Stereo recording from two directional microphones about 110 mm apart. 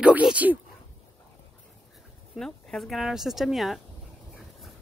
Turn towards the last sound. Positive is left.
turn(degrees=0)  # may be behind; listen again after turning